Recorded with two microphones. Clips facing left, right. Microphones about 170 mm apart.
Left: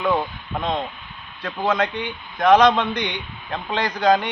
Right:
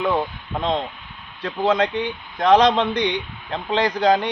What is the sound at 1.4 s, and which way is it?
Speech, 25° right (ahead or behind).